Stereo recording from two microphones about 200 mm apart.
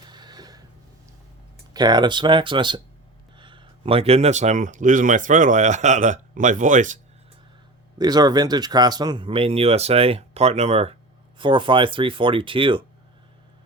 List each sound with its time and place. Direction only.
0.1 s a sound: 20° right (ahead or behind)
1.7 s speech: 20° right (ahead or behind); by 7.0 s 40° right (ahead or behind)
7.9 s speech: 20° right (ahead or behind)